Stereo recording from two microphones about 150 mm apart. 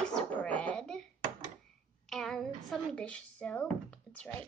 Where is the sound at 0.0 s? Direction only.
5° left (ahead or behind).